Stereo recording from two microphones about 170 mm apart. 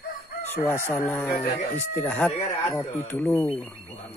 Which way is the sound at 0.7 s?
15° left (ahead or behind).